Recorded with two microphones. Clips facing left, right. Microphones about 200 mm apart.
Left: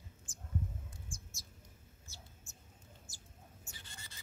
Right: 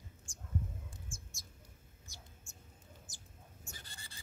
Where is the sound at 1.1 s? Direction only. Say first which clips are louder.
Left 1 dB; 25° right (ahead or behind).